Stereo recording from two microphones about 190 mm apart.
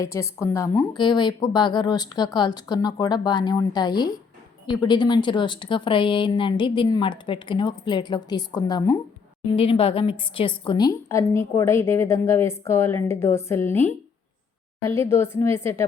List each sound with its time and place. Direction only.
0.0 s a woman's voice: 15° left (ahead or behind)